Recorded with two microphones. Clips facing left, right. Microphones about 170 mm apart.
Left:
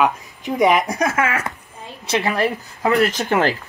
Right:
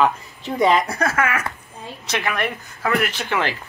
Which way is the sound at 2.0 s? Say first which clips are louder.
Left 5 dB; 30° left (ahead or behind).